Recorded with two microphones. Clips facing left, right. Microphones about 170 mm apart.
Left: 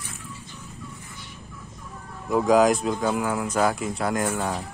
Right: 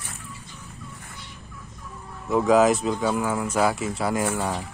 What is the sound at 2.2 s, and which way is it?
Speech, centre (ahead or behind).